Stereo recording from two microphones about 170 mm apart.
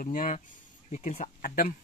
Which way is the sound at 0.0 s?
50° left (ahead or behind).